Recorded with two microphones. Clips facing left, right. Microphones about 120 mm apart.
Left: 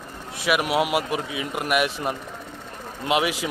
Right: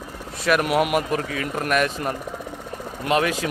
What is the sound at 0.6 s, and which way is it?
A man's voice, 20° left (ahead or behind).